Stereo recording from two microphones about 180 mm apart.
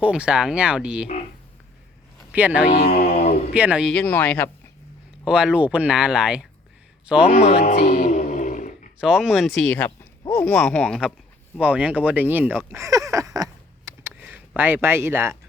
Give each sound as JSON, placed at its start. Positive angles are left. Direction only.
{"t": 0.0, "sound": "speech", "side_deg": -5}
{"t": 2.3, "sound": "speech", "side_deg": -10}
{"t": 2.7, "sound": "speech", "side_deg": 60}
{"t": 3.0, "sound": "a sound", "side_deg": 35}
{"t": 3.5, "sound": "speech", "side_deg": -5}
{"t": 3.9, "sound": "speech", "side_deg": 10}
{"t": 5.2, "sound": "a man's voice", "side_deg": -5}
{"t": 7.3, "sound": "speech", "side_deg": 35}
{"t": 7.8, "sound": "a sound", "side_deg": 50}
{"t": 9.0, "sound": "speech", "side_deg": -5}
{"t": 9.7, "sound": "speech", "side_deg": 10}
{"t": 12.7, "sound": "a sound", "side_deg": -15}
{"t": 14.2, "sound": "speech", "side_deg": -10}